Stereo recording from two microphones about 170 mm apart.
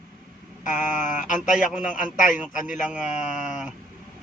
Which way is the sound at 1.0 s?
50° left (ahead or behind).